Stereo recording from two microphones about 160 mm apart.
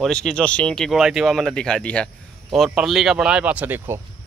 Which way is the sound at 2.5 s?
5° right (ahead or behind).